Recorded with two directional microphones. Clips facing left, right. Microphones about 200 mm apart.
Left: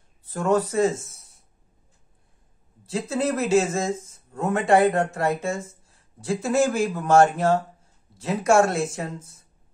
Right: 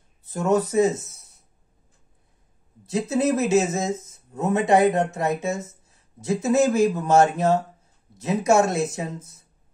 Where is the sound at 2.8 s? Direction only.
20° right (ahead or behind).